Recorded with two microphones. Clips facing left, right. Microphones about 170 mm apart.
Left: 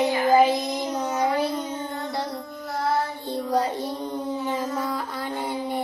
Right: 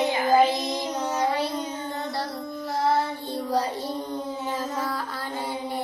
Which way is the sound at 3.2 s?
20° left (ahead or behind).